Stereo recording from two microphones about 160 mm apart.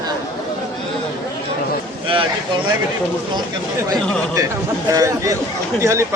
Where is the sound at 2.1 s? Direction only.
30° right (ahead or behind).